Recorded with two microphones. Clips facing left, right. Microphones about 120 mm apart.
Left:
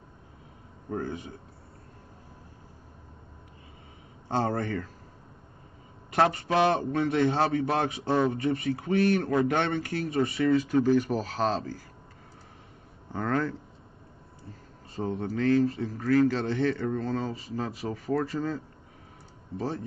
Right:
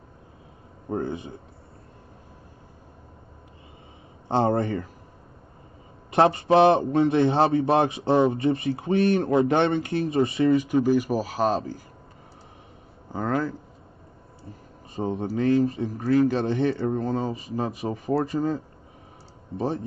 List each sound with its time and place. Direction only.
0.8 s speech: 25° right (ahead or behind)
4.3 s a man's voice: 20° right (ahead or behind)
6.1 s a man's voice: 25° right (ahead or behind)
13.1 s speech: 10° right (ahead or behind)
15.0 s a man's voice: 20° right (ahead or behind)